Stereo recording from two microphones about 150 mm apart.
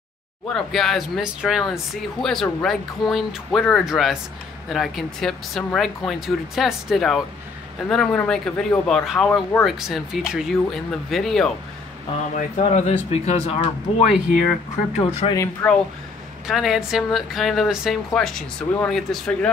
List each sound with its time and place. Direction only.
0.5 s a woman's voice: centre (ahead or behind)
12.4 s speech: 45° left (ahead or behind)
15.6 s speech: 10° left (ahead or behind)
16.4 s a woman's voice: centre (ahead or behind)